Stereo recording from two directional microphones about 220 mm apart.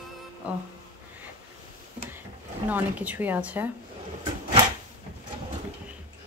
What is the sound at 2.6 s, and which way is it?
Speech, 5° right (ahead or behind).